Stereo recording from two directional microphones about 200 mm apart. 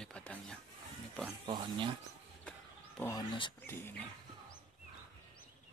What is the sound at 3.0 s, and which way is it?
Speech, 20° left (ahead or behind).